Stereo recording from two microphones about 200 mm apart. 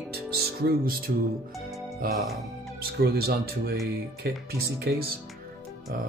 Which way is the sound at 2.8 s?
50° right (ahead or behind).